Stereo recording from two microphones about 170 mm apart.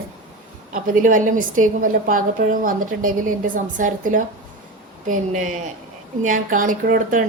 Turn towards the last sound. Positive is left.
turn(degrees=-55)  # may be behind; listen again after turning